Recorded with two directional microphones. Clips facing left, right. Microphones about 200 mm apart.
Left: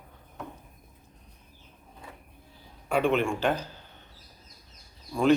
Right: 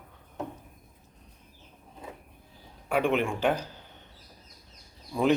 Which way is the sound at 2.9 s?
15° right (ahead or behind).